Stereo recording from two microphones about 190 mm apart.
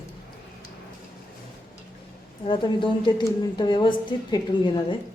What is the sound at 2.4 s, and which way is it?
A woman's voice, 25° left (ahead or behind).